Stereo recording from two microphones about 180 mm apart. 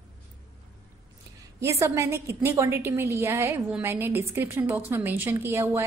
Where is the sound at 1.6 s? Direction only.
15° right (ahead or behind).